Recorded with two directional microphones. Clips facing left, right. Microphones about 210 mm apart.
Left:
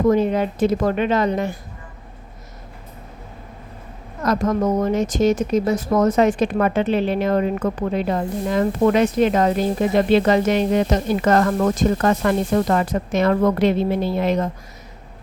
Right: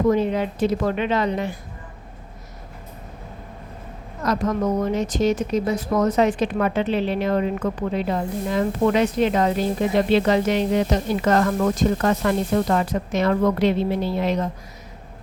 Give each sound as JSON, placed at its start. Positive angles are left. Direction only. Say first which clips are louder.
{"t": 0.1, "sound": "speech", "louder": "left 3 dB", "side_deg": 45}
{"t": 4.3, "sound": "speech", "louder": "left 3 dB", "side_deg": 45}